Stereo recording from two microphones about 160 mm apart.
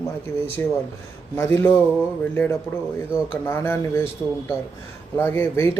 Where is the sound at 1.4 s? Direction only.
15° left (ahead or behind).